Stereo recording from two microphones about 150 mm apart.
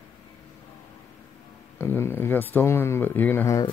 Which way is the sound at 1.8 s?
15° left (ahead or behind).